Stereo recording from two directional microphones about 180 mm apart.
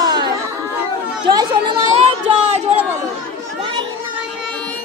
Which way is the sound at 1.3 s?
25° right (ahead or behind).